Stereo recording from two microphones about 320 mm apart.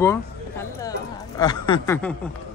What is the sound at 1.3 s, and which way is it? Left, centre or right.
Speech, centre.